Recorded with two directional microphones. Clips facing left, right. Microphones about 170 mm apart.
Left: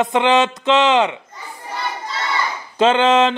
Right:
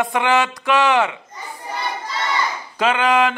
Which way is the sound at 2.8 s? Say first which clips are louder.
Left 4 dB; 25° left (ahead or behind).